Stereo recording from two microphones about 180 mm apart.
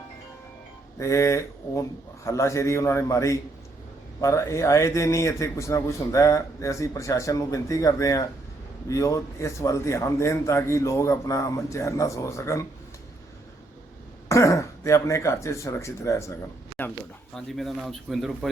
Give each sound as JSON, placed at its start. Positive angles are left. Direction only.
{"t": 0.9, "sound": "a man's voice", "side_deg": 15}
{"t": 14.3, "sound": "speech", "side_deg": 15}
{"t": 17.3, "sound": "speech", "side_deg": 0}